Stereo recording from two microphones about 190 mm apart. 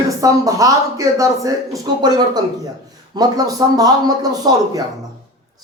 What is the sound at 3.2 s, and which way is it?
A man's voice, 20° right (ahead or behind).